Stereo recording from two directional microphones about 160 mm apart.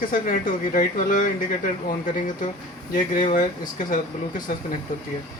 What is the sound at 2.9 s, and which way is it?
Speech, 55° left (ahead or behind).